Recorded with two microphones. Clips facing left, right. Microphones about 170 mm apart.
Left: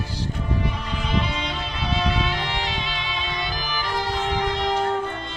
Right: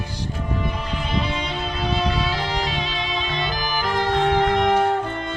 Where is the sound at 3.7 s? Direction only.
55° right (ahead or behind).